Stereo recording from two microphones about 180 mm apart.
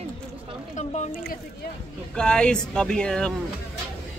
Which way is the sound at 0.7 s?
40° left (ahead or behind).